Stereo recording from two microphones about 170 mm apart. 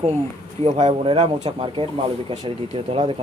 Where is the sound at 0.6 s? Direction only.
40° right (ahead or behind).